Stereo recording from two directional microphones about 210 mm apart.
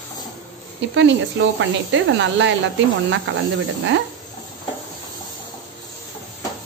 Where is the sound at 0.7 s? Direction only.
60° right (ahead or behind).